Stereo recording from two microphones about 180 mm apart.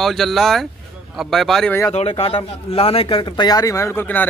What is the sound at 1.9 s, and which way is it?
Speech, 35° left (ahead or behind).